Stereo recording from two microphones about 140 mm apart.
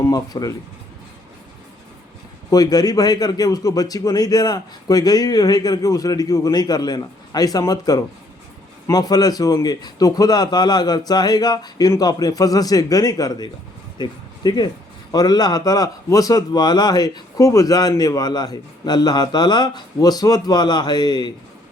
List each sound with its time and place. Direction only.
0.0 s speech: 25° left (ahead or behind)
2.5 s a man's voice: 25° left (ahead or behind)